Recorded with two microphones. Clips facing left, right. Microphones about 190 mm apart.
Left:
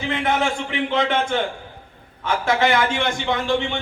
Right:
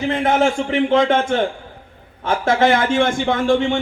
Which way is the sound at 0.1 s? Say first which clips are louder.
Right 4 dB; 45° right (ahead or behind).